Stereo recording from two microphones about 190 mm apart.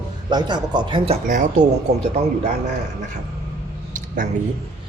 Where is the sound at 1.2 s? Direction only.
40° right (ahead or behind).